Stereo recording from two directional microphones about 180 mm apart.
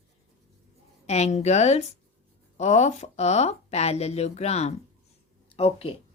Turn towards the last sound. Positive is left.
turn(degrees=35)  # may be behind; listen again after turning